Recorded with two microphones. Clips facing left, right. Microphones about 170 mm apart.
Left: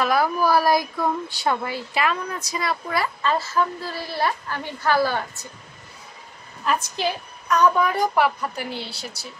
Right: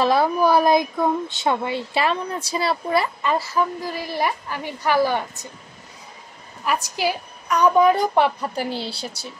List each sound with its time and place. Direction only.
0.0 s speech: 25° right (ahead or behind)
3.2 s a woman's voice: 15° right (ahead or behind)
6.6 s speech: 10° right (ahead or behind); by 9.3 s 30° right (ahead or behind)